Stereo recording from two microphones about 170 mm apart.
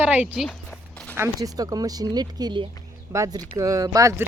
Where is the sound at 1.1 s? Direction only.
20° right (ahead or behind).